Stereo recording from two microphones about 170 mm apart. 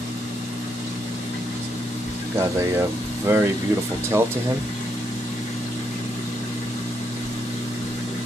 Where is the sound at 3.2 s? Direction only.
15° right (ahead or behind).